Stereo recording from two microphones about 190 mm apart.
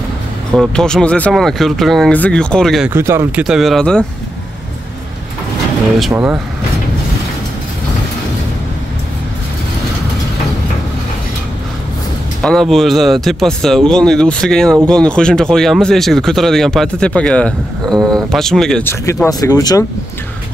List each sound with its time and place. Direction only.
0.5 s speech: 5° left (ahead or behind)
2.9 s speech: 15° right (ahead or behind); by 4.0 s 5° left (ahead or behind)
6.1 s speech: 5° right (ahead or behind)
12.4 s speech: 5° left (ahead or behind)
17.8 s speech: 20° right (ahead or behind)
18.3 s speech: centre (ahead or behind); by 19.8 s 20° left (ahead or behind)